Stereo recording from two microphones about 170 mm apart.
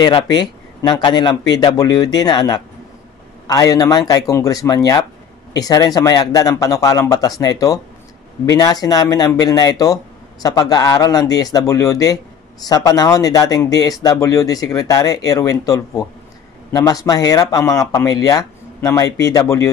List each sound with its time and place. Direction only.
0.0 s speech: 25° left (ahead or behind)